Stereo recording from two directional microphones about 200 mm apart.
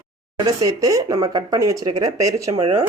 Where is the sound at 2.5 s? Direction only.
30° right (ahead or behind).